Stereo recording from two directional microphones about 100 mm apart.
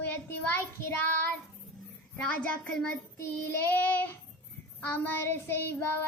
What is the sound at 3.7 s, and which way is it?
Child singing, 20° left (ahead or behind).